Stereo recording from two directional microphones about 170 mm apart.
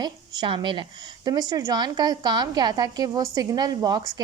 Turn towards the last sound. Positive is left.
turn(degrees=-25)  # may be behind; listen again after turning